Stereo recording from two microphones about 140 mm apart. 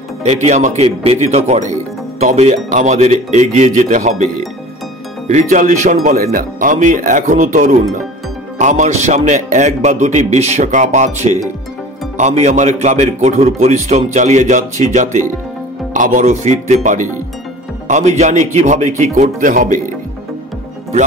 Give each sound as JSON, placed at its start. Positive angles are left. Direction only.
{"t": 0.2, "sound": "a man's voice", "side_deg": -50}
{"t": 5.3, "sound": "a man's voice", "side_deg": -60}
{"t": 6.0, "sound": "a man's voice", "side_deg": -75}